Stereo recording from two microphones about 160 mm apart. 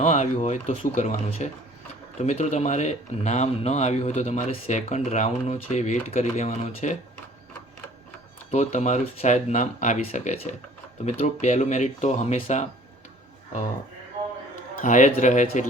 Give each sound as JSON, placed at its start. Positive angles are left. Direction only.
{"t": 0.0, "sound": "speech", "side_deg": 45}
{"t": 8.4, "sound": "speech", "side_deg": 45}
{"t": 14.8, "sound": "speech", "side_deg": 55}